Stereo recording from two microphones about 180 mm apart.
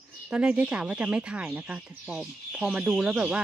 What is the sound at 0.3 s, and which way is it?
Speech, 5° right (ahead or behind).